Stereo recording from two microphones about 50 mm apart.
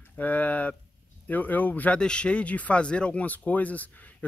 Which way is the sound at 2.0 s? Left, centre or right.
Centre.